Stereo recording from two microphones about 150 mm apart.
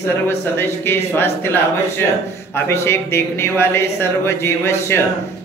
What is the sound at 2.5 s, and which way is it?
Speech, 15° left (ahead or behind).